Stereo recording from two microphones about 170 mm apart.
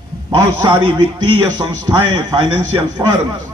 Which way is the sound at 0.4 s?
20° right (ahead or behind).